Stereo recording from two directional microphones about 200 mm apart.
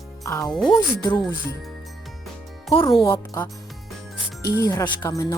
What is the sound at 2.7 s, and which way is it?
Speech, 25° left (ahead or behind).